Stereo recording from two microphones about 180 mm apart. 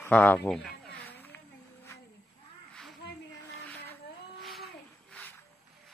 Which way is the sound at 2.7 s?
Centre (ahead or behind).